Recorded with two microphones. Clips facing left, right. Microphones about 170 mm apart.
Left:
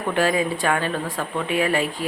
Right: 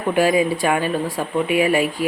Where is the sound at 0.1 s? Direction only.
10° right (ahead or behind).